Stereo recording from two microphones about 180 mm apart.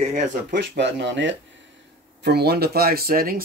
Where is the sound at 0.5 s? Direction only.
65° right (ahead or behind); by 1.3 s 85° right.